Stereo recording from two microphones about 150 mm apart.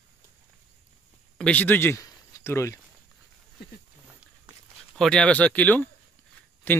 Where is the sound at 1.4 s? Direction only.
10° left (ahead or behind).